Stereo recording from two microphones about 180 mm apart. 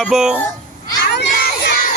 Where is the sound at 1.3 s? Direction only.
50° left (ahead or behind).